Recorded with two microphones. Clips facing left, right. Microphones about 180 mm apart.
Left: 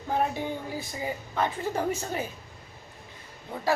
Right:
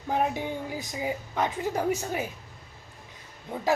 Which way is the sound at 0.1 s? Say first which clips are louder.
Right 1 dB; 15° right (ahead or behind).